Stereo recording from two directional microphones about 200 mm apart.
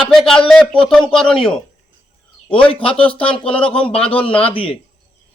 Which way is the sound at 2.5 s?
5° left (ahead or behind).